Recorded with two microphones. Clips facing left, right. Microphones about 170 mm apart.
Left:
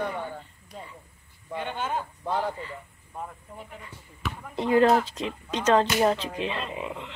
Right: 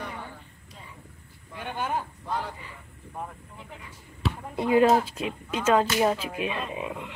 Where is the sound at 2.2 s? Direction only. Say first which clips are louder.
Left 4 dB; 60° left (ahead or behind).